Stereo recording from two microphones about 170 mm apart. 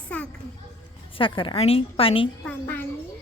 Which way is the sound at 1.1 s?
30° left (ahead or behind).